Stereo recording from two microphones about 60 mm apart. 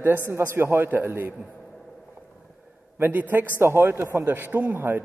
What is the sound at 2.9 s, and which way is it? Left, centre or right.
A man's voice, right.